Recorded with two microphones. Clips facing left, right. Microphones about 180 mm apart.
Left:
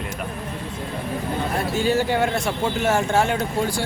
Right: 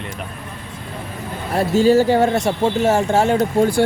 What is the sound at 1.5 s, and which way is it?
Speech, 40° right (ahead or behind).